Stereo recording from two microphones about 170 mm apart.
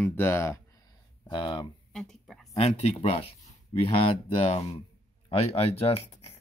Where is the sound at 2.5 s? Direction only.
40° left (ahead or behind).